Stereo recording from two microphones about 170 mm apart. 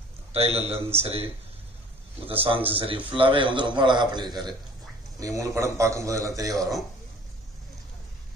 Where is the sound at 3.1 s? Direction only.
30° right (ahead or behind).